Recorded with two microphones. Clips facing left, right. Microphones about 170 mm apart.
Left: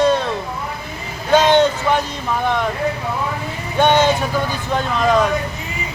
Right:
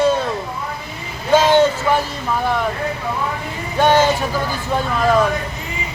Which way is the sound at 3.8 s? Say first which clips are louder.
Even; centre (ahead or behind).